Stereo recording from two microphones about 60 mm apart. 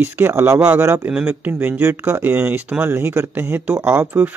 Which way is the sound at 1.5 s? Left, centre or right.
Right.